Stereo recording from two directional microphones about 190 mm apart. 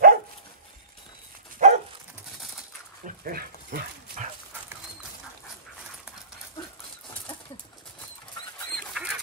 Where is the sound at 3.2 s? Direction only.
50° right (ahead or behind).